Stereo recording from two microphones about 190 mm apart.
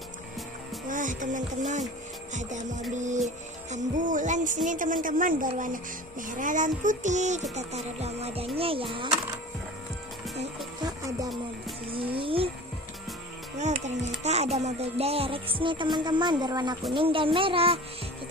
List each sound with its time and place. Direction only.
0.8 s music: 40° right (ahead or behind)
4.6 s speech: 45° right (ahead or behind)
7.5 s music: 35° right (ahead or behind)
8.5 s speech: 30° right (ahead or behind)
10.8 s music: 20° right (ahead or behind)
13.6 s speech: 35° right (ahead or behind)